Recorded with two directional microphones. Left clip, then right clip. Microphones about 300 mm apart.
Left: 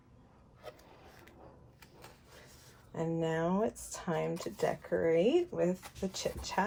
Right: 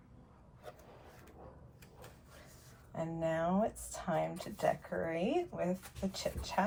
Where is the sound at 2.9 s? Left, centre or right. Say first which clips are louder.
Left 2 dB; left.